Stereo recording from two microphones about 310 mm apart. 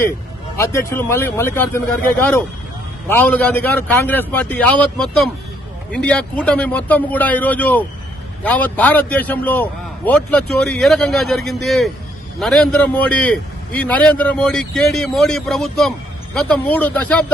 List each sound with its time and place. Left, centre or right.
0.5 s speech: centre
3.1 s a man's voice: centre